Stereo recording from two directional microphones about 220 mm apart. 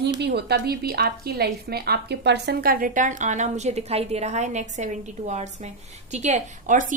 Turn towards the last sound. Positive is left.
turn(degrees=-35)  # may be behind; listen again after turning